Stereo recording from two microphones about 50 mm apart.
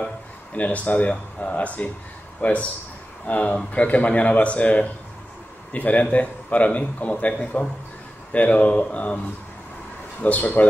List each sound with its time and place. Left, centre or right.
0.6 s a man's voice: left
10.2 s speech: left